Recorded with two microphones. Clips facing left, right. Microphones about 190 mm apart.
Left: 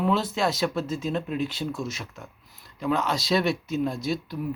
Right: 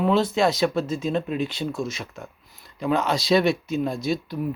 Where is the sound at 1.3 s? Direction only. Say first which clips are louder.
Right 2 dB; 80° right.